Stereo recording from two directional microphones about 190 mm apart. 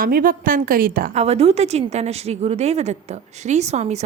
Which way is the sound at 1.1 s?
35° right (ahead or behind).